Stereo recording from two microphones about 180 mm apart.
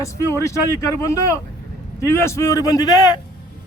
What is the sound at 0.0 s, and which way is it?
A man's voice, 15° left (ahead or behind).